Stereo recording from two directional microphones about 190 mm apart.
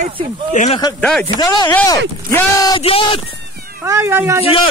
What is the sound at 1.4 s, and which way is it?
Speech, 20° left (ahead or behind).